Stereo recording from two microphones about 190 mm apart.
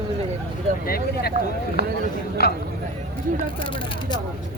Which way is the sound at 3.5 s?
25° left (ahead or behind).